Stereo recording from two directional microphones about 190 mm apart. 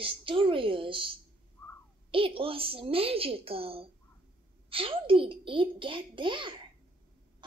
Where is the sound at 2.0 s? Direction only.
30° right (ahead or behind).